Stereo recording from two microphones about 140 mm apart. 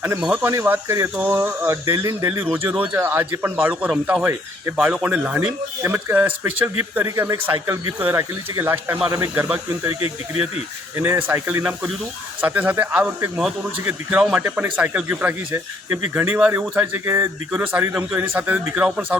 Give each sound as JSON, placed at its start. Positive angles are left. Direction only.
{"t": 0.4, "sound": "speech", "side_deg": -15}
{"t": 10.9, "sound": "speech", "side_deg": -15}